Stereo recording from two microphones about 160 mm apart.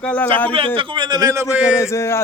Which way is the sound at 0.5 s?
35° right (ahead or behind).